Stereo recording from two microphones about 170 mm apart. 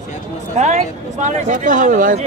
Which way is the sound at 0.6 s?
40° right (ahead or behind).